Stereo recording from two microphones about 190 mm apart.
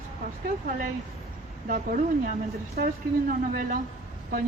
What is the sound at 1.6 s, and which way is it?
A woman's voice, 45° right (ahead or behind).